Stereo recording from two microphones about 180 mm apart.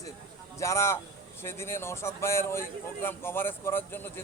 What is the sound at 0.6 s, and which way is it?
Speech, 15° left (ahead or behind).